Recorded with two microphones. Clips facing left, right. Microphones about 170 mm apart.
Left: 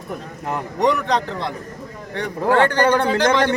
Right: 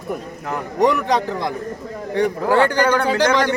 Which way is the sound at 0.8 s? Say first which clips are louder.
Right 2 dB; 5° right (ahead or behind).